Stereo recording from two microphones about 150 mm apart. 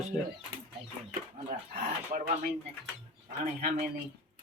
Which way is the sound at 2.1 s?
55° right (ahead or behind).